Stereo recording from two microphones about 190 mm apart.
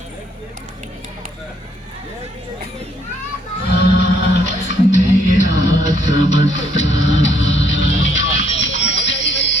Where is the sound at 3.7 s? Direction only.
60° left (ahead or behind).